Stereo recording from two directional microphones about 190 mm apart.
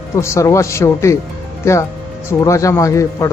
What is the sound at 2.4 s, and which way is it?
Speech, 15° left (ahead or behind).